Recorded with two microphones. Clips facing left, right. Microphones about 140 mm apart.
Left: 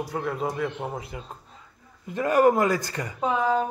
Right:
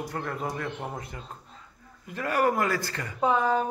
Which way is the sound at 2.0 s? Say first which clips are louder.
Left 6 dB; 20° left (ahead or behind).